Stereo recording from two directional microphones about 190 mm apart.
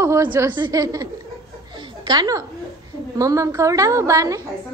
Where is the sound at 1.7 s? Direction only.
25° right (ahead or behind).